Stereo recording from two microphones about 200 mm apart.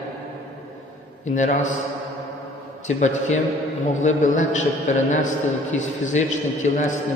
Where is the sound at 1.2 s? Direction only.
40° left (ahead or behind).